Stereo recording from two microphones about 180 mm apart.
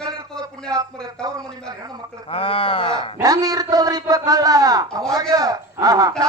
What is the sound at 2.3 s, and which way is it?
Speech, 30° left (ahead or behind).